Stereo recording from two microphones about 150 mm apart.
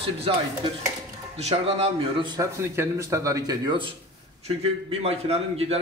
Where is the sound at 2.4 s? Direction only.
20° right (ahead or behind).